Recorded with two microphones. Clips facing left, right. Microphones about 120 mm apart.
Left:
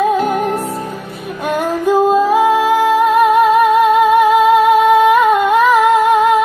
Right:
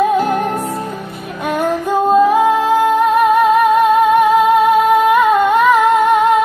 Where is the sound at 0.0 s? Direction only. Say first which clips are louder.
Even; centre (ahead or behind).